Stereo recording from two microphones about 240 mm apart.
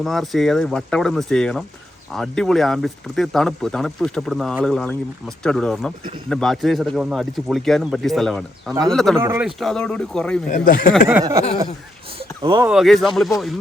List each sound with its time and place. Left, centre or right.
0.0 s speech: centre
9.1 s speech: centre
9.6 s speech: centre
10.5 s speech: left
11.2 s speech: centre
12.7 s speech: centre